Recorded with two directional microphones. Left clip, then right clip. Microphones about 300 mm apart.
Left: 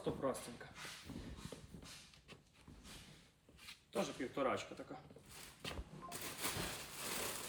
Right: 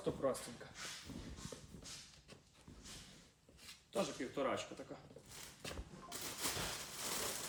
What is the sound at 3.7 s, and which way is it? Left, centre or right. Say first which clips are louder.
Speech: right 1 dB; centre.